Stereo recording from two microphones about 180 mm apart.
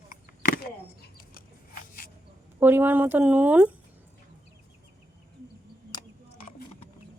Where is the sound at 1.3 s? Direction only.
55° left (ahead or behind).